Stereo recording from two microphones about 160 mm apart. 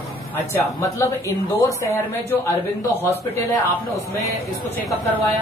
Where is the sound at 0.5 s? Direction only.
15° left (ahead or behind).